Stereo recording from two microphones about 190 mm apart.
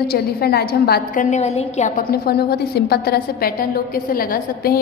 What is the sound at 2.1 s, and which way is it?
A woman's voice, 55° left (ahead or behind).